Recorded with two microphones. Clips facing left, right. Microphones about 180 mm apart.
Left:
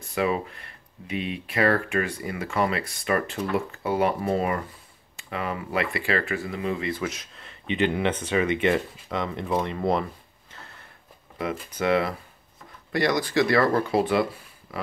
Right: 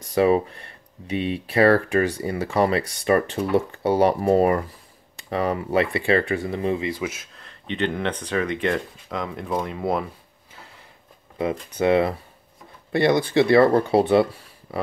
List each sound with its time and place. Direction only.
0.1 s speech: 35° right (ahead or behind)
6.8 s speech: 15° right (ahead or behind)
10.5 s a sound: 10° right (ahead or behind)
11.8 s speech: 25° right (ahead or behind)